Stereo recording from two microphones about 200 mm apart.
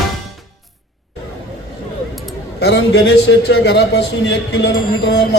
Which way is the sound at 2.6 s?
60° left (ahead or behind).